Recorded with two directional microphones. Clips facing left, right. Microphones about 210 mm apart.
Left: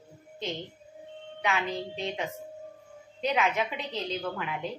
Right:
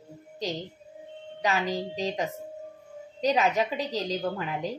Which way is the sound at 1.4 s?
35° right (ahead or behind).